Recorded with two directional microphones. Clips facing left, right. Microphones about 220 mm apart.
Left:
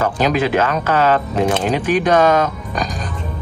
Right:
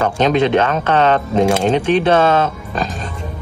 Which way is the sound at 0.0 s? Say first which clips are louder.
Right 2 dB; 25° right (ahead or behind).